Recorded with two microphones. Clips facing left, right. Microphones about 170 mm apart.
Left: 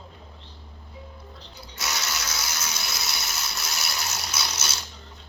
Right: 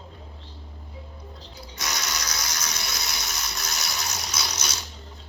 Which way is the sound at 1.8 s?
5° left (ahead or behind).